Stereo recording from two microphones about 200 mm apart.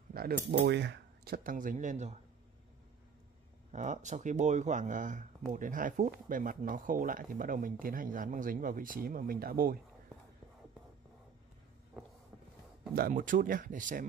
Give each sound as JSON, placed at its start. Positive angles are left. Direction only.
{"t": 0.1, "sound": "speech", "side_deg": -50}
{"t": 3.7, "sound": "speech", "side_deg": -35}
{"t": 12.9, "sound": "speech", "side_deg": -45}